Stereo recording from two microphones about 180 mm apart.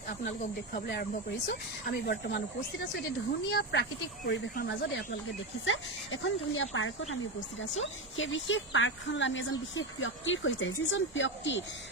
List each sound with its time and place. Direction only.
0.3 s speech: 65° left (ahead or behind)
3.5 s speech: 70° left (ahead or behind)
4.5 s speech: 65° left (ahead or behind)
5.6 s a woman's voice: 90° left